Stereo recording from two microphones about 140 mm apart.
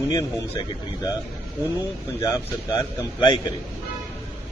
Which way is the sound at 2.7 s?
35° left (ahead or behind).